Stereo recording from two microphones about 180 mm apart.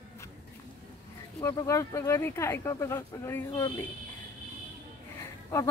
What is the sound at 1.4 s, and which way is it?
Speech, 20° left (ahead or behind).